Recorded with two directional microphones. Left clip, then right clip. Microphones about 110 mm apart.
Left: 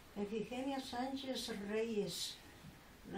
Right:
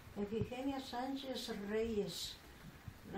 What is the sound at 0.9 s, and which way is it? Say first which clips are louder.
A woman's voice: even; centre (ahead or behind).